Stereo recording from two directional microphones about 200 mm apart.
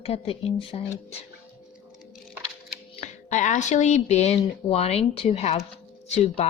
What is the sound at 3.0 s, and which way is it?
Speech, 35° left (ahead or behind).